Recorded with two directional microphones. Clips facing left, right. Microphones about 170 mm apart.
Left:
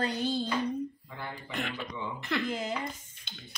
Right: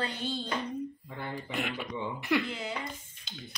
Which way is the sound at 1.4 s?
5° right (ahead or behind).